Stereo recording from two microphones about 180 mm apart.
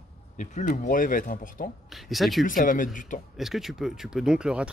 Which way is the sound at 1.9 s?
Centre (ahead or behind).